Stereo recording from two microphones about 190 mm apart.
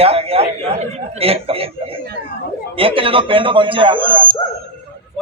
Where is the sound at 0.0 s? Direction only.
30° right (ahead or behind).